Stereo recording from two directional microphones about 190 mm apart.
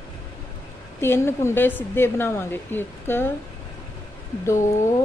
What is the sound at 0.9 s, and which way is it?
A woman's voice, 15° left (ahead or behind).